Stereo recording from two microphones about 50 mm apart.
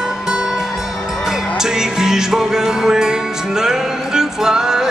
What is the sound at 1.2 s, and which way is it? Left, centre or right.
Music, centre.